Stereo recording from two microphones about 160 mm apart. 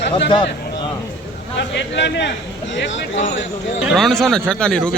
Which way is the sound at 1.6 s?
90° left.